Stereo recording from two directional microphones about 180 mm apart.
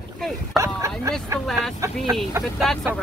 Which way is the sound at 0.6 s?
15° right (ahead or behind).